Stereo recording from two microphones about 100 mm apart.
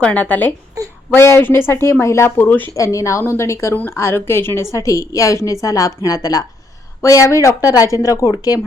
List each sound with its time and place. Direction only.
0.0 s a woman's voice: 15° left (ahead or behind)
2.7 s a woman's voice: 30° left (ahead or behind)